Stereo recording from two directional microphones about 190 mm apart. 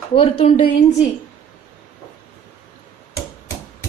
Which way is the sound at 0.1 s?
30° left (ahead or behind).